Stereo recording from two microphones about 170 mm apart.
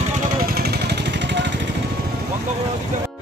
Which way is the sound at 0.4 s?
60° right (ahead or behind).